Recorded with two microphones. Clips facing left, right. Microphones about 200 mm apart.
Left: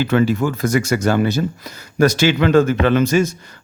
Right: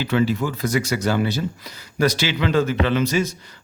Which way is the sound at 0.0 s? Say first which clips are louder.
Left 4 dB; 50° left (ahead or behind).